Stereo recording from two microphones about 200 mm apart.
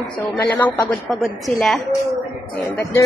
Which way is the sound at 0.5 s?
10° left (ahead or behind).